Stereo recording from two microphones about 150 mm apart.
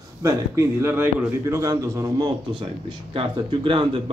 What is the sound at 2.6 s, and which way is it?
Speech, 35° right (ahead or behind).